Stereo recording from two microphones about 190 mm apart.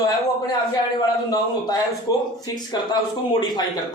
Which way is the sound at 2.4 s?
20° left (ahead or behind).